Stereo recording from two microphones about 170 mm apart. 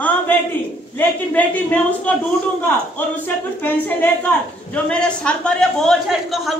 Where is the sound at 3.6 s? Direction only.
10° left (ahead or behind).